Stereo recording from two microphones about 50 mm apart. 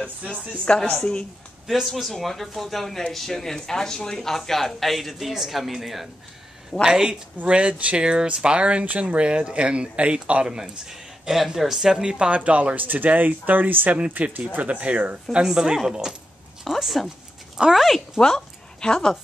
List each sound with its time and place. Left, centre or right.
0.7 s a woman's voice: centre
1.7 s speech: centre; by 15.1 s right
15.4 s speech: centre
16.6 s speech: centre
18.2 s a sound: centre